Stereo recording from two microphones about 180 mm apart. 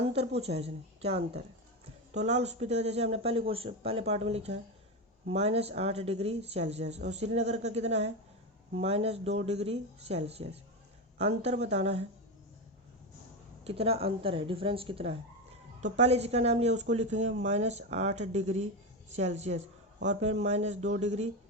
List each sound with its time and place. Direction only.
0.0 s a sound: 35° right (ahead or behind)
0.3 s a man's voice: 35° right (ahead or behind)
13.7 s a man's voice: 35° right (ahead or behind)